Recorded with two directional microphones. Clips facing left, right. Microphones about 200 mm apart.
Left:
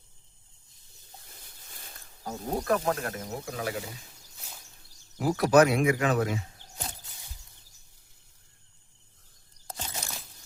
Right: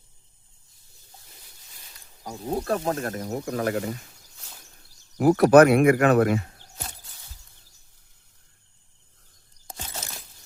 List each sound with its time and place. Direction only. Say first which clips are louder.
2.6 s speech: left 1 dB; 30° right (ahead or behind); by 3.8 s 50° right (ahead or behind)
5.1 s speech: right 7 dB; 55° right (ahead or behind)
9.6 s a sound: right 1 dB; 10° right (ahead or behind)